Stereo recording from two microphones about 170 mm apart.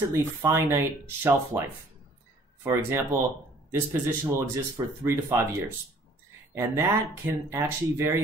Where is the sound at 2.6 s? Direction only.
15° right (ahead or behind).